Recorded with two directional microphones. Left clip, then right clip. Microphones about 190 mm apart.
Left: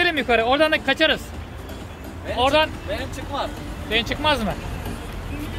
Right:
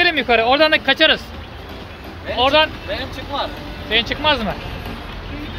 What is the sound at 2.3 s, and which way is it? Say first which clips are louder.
Speech: right 4 dB; 5° right (ahead or behind).